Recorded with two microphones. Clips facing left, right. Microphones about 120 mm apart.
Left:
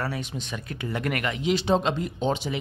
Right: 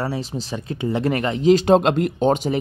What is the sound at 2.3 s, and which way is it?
Speech, 45° right (ahead or behind).